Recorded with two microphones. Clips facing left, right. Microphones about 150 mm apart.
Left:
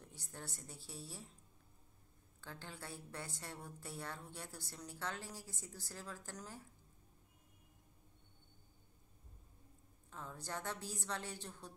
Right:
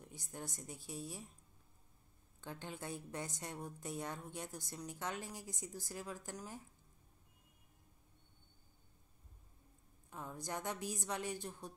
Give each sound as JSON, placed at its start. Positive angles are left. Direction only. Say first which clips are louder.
{"t": 0.0, "sound": "a woman's voice", "louder": "right 4 dB", "side_deg": -15}
{"t": 2.4, "sound": "a woman's voice", "louder": "right 5 dB", "side_deg": -20}
{"t": 10.0, "sound": "a woman's voice", "louder": "right 3 dB", "side_deg": -15}